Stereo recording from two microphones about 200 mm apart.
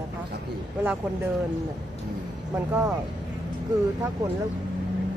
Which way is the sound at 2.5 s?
10° right (ahead or behind).